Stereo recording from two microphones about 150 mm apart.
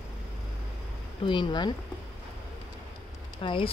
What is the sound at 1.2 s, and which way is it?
Speech, 30° left (ahead or behind).